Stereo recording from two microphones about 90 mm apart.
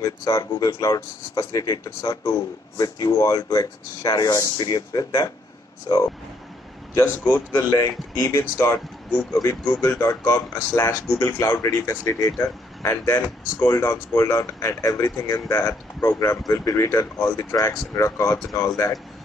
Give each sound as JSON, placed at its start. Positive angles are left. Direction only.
{"t": 0.0, "sound": "speech", "side_deg": 45}
{"t": 7.2, "sound": "speech", "side_deg": 20}
{"t": 7.7, "sound": "speech", "side_deg": 30}